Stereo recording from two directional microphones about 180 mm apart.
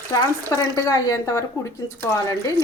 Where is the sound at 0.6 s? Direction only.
20° left (ahead or behind).